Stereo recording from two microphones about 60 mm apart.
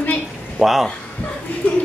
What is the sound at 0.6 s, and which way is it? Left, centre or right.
Speech, centre.